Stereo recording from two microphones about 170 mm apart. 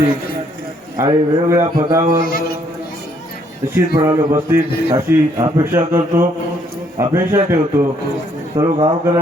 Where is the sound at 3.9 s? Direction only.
20° right (ahead or behind).